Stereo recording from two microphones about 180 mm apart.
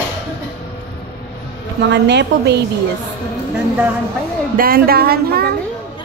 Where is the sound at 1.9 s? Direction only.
70° right (ahead or behind).